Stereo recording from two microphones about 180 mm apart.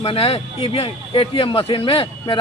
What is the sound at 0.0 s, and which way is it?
Speech, 30° left (ahead or behind).